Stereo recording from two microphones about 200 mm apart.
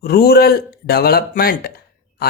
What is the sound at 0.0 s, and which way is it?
Speech, 50° left (ahead or behind).